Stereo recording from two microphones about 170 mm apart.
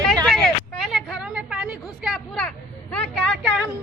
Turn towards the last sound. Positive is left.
turn(degrees=0)  # may be behind; listen again after turning